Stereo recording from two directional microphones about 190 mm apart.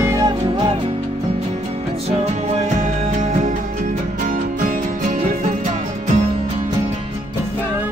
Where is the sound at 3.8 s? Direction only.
45° right (ahead or behind).